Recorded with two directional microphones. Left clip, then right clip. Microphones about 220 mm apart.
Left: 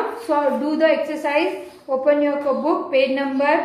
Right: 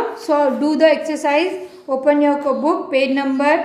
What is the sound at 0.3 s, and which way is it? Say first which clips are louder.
A woman's voice: right 4 dB; 45° right (ahead or behind).